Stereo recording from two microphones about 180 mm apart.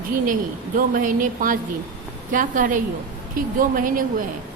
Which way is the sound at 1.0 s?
50° right (ahead or behind).